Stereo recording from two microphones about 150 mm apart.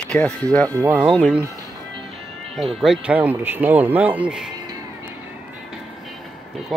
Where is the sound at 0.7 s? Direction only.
20° right (ahead or behind).